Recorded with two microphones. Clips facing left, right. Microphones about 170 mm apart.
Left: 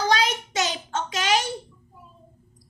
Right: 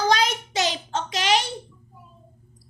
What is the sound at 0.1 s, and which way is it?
Child singing, 40° right (ahead or behind).